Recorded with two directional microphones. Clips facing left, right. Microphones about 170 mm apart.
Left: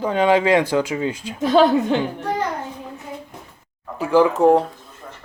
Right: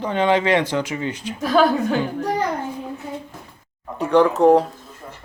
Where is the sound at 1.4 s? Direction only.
25° left (ahead or behind).